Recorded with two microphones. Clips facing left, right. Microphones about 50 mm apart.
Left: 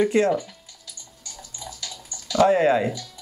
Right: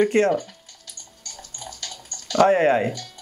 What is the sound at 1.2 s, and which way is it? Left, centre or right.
Bathtub, right.